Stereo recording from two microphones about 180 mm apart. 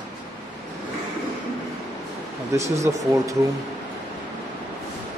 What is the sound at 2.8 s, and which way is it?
Speech, 15° right (ahead or behind).